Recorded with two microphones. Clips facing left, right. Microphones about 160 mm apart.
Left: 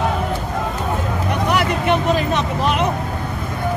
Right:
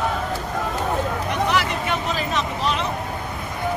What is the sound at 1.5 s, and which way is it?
Vehicle, 55° left (ahead or behind).